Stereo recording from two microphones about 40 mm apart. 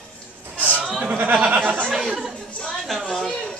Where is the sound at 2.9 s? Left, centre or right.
Centre.